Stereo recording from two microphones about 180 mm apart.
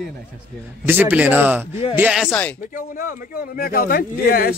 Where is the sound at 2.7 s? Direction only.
50° left (ahead or behind).